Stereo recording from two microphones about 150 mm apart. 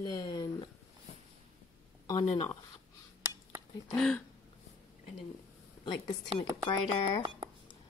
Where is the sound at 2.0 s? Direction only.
30° left (ahead or behind).